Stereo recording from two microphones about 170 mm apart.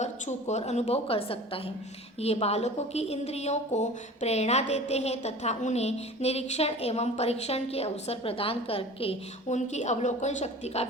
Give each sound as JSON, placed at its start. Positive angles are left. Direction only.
{"t": 0.0, "sound": "a woman's voice", "side_deg": 40}